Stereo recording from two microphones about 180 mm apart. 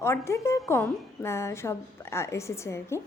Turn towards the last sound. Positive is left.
turn(degrees=15)  # may be behind; listen again after turning